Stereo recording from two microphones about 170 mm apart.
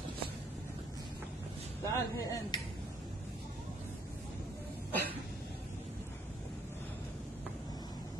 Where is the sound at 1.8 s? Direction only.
20° left (ahead or behind).